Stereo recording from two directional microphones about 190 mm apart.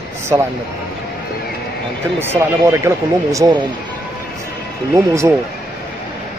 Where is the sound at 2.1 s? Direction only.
15° right (ahead or behind).